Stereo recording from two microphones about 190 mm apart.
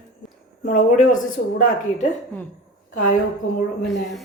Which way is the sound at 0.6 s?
45° left (ahead or behind).